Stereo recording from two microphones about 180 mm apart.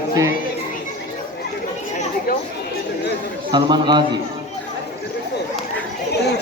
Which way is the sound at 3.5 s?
25° right (ahead or behind).